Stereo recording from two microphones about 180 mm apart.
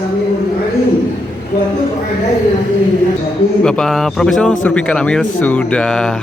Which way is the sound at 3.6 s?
5° left (ahead or behind).